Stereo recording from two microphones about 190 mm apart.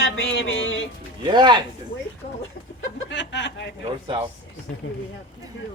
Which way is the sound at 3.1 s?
70° left (ahead or behind).